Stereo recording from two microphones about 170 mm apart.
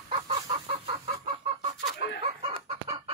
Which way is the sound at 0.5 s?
35° right (ahead or behind).